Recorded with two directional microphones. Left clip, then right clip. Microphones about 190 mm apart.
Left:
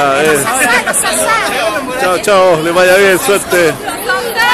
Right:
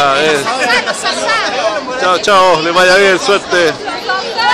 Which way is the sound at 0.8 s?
55° left (ahead or behind).